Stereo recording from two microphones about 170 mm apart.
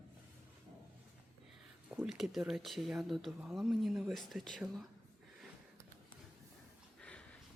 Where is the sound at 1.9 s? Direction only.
5° right (ahead or behind).